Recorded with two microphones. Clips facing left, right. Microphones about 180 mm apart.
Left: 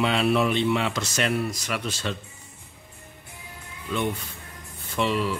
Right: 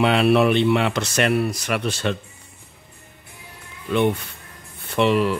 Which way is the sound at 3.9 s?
65° right (ahead or behind).